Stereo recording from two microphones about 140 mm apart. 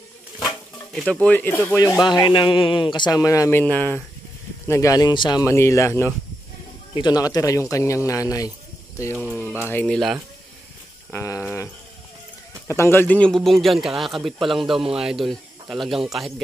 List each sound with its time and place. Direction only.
0.9 s speech: 5° left (ahead or behind)
2.0 s a man's voice: 30° left (ahead or behind); by 4.0 s 10° left (ahead or behind)
4.6 s speech: 20° left (ahead or behind)
5.4 s speech: 20° left (ahead or behind)
9.1 s speech: 10° right (ahead or behind)
9.7 s speech: 15° left (ahead or behind)
11.1 s a sound: 20° left (ahead or behind)
12.6 s speech: 20° left (ahead or behind); by 16.3 s centre (ahead or behind)